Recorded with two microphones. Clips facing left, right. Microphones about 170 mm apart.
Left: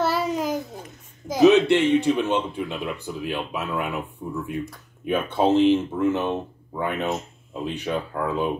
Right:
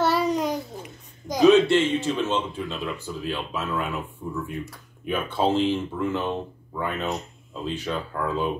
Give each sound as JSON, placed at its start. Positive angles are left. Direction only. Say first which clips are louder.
{"t": 0.0, "sound": "babbling", "louder": "right 1 dB", "side_deg": 0}
{"t": 1.4, "sound": "speech", "louder": "left 1 dB", "side_deg": 20}